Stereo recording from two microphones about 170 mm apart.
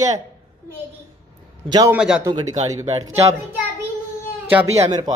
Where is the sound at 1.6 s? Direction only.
25° right (ahead or behind).